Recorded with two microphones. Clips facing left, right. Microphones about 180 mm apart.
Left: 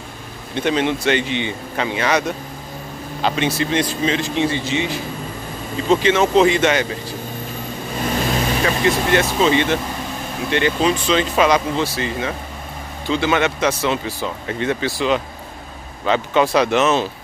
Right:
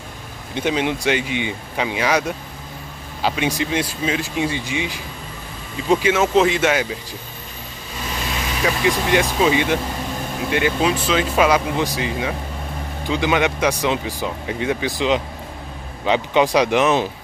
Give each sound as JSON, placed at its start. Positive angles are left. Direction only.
{"t": 0.6, "sound": "speech", "side_deg": -10}
{"t": 8.6, "sound": "speech", "side_deg": -15}